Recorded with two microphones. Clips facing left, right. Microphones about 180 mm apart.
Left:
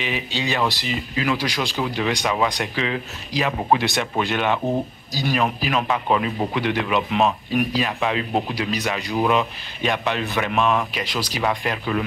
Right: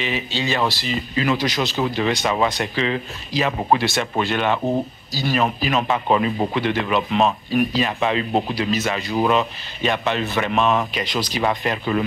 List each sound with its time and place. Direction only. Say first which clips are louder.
0.0 s speech: right 2 dB; 15° left (ahead or behind)
1.1 s speech: right 3 dB; 5° left (ahead or behind)
3.7 s speech: right 1 dB; 15° left (ahead or behind); by 6.5 s centre (ahead or behind)
6.5 s speech: right 1 dB; 10° left (ahead or behind)